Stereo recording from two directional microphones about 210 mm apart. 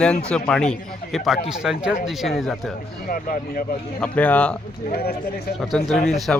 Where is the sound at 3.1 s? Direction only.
40° left (ahead or behind).